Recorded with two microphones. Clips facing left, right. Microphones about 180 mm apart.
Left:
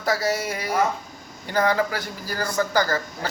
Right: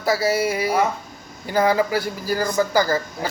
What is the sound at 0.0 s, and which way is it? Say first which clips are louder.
A man's voice: right 4 dB; 5° right (ahead or behind).